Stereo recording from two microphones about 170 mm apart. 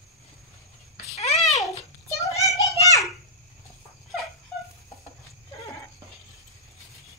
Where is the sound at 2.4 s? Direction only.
20° right (ahead or behind).